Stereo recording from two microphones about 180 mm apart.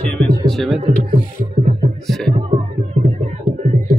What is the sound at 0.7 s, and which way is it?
Speech, 35° right (ahead or behind).